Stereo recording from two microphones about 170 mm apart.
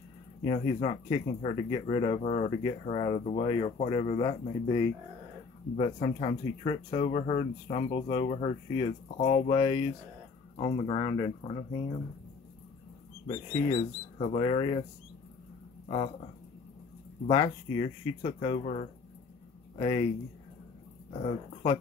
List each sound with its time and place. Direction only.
0.4 s speech: 30° left (ahead or behind)
13.3 s speech: 25° left (ahead or behind)
14.1 s speech: 40° left (ahead or behind)
17.3 s speech: 30° left (ahead or behind)